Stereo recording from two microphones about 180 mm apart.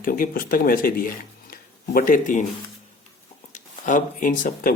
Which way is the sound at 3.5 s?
45° left (ahead or behind).